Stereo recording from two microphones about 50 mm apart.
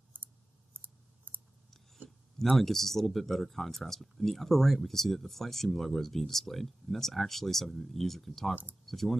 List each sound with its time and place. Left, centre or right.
0.8 s scissors: right
2.0 s speech: centre